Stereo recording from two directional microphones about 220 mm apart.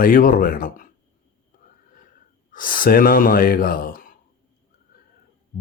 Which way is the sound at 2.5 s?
40° left (ahead or behind).